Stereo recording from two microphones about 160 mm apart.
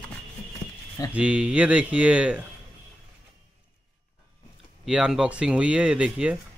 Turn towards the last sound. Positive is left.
turn(degrees=-5)  # may be behind; listen again after turning